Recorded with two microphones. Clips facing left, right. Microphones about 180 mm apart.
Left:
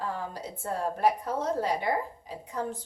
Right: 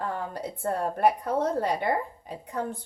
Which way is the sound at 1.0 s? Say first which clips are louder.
Right 4 dB; 60° right (ahead or behind).